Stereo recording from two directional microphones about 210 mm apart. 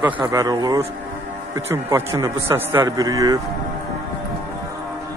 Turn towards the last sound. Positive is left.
turn(degrees=-15)  # may be behind; listen again after turning